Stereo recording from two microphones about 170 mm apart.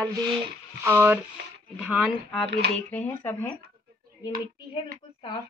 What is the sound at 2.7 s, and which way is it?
Speech, 10° left (ahead or behind).